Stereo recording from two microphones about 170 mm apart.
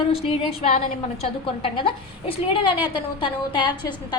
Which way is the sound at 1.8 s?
30° left (ahead or behind).